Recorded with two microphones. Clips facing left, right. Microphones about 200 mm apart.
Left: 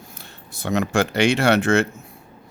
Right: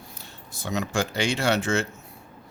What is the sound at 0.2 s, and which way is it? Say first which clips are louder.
Speech: left 6 dB; 60° left (ahead or behind).